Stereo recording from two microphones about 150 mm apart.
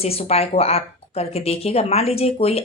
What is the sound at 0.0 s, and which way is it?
Speech, 45° left (ahead or behind).